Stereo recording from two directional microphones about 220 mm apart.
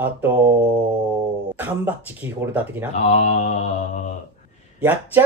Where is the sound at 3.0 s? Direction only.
30° left (ahead or behind).